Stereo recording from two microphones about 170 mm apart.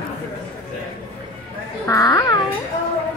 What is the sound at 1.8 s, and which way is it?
Speech, 20° left (ahead or behind).